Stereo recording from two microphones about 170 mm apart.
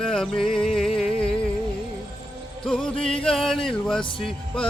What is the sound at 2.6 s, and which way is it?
Music, 5° left (ahead or behind).